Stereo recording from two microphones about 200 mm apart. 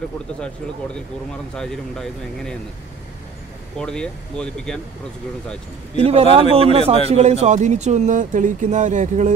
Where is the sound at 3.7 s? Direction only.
5° left (ahead or behind).